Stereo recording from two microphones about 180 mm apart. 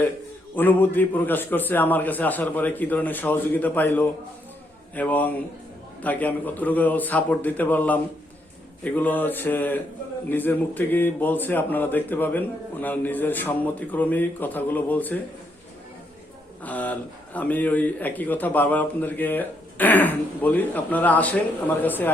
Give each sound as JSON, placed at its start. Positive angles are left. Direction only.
{"t": 0.5, "sound": "speech", "side_deg": 10}
{"t": 16.6, "sound": "speech", "side_deg": 10}